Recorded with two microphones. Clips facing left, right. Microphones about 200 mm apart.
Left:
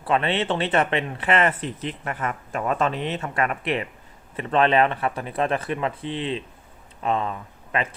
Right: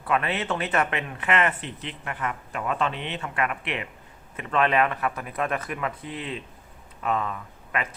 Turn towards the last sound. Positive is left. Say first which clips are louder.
# left 4 dB
turn(degrees=30)  # may be behind; listen again after turning